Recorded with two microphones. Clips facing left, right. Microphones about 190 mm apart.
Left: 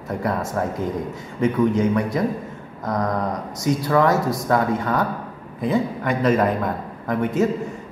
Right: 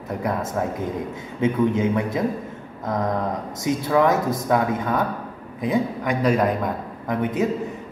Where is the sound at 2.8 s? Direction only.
25° right (ahead or behind).